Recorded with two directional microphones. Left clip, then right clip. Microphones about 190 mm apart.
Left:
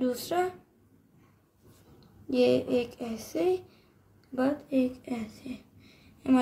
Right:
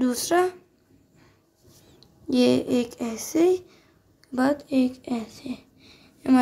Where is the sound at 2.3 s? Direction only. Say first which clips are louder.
Right 3 dB; 55° right (ahead or behind).